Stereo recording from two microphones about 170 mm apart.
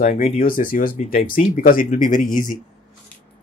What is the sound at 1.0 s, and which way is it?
Speech, 40° left (ahead or behind).